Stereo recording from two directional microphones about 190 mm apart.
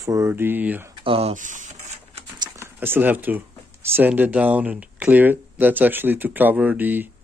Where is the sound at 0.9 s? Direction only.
30° right (ahead or behind).